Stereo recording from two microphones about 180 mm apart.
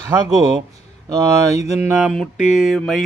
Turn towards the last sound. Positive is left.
turn(degrees=0)  # may be behind; listen again after turning